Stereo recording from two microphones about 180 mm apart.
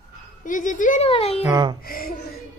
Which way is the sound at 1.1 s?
35° left (ahead or behind).